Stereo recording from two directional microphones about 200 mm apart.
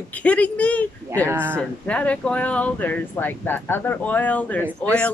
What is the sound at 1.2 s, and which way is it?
Speech, 10° right (ahead or behind).